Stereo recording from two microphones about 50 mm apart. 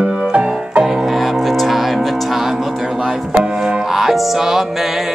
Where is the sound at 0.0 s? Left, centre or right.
Right.